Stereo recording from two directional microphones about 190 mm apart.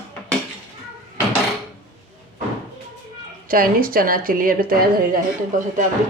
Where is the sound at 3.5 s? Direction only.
50° right (ahead or behind).